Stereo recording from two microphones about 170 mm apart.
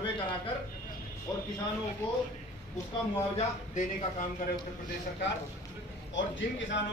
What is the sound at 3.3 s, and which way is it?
Speech, 40° left (ahead or behind).